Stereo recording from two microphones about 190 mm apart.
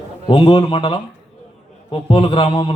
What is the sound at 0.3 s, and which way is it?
A man's voice, 30° left (ahead or behind).